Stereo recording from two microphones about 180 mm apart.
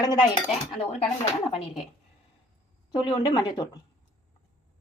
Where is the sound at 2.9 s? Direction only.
20° left (ahead or behind).